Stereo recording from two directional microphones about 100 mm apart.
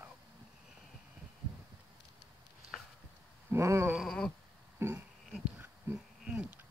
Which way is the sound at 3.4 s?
30° right (ahead or behind).